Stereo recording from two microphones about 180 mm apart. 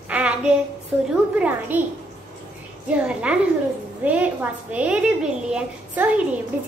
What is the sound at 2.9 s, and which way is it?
A woman's voice, 5° right (ahead or behind).